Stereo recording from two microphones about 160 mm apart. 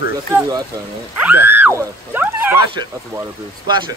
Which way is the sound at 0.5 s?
20° right (ahead or behind).